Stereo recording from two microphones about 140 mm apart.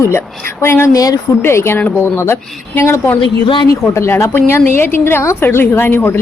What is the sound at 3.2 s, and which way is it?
Speech, 35° left (ahead or behind).